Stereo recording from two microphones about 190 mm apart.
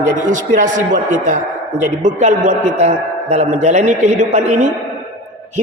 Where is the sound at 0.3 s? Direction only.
40° right (ahead or behind).